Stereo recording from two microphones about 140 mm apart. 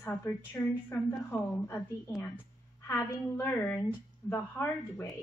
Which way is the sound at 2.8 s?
15° left (ahead or behind).